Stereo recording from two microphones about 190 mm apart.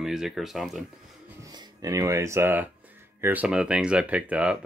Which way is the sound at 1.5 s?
20° right (ahead or behind).